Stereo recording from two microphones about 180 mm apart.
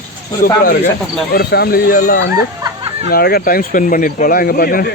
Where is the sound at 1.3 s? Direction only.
60° left (ahead or behind).